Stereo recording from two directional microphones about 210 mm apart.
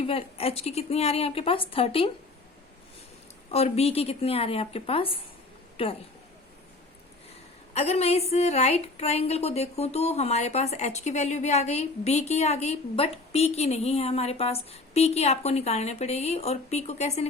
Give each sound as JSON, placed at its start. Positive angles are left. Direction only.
{"t": 0.0, "sound": "a woman's voice", "side_deg": 25}
{"t": 3.5, "sound": "a woman's voice", "side_deg": 30}
{"t": 7.7, "sound": "a woman's voice", "side_deg": 30}